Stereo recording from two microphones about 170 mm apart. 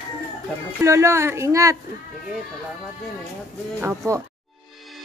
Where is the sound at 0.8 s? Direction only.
15° right (ahead or behind).